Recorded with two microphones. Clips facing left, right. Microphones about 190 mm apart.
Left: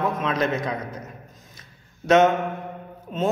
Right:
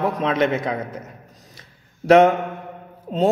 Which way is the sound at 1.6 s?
30° right (ahead or behind).